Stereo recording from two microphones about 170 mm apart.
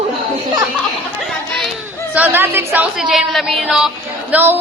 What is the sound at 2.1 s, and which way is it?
A woman's voice, 10° right (ahead or behind).